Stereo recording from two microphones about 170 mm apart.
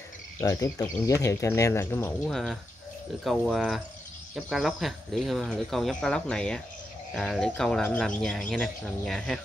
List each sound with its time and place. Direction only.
0.4 s speech: 20° left (ahead or behind)
2.2 s speech: centre (ahead or behind)